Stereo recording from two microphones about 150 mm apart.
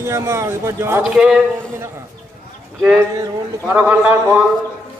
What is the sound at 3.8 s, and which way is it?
Speech, 10° right (ahead or behind).